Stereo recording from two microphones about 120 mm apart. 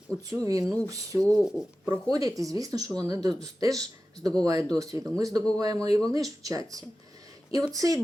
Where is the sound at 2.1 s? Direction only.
30° right (ahead or behind).